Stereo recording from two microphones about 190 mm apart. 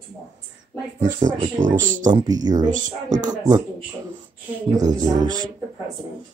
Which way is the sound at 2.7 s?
40° right (ahead or behind).